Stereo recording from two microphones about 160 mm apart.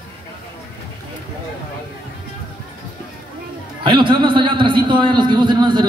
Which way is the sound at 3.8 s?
30° right (ahead or behind).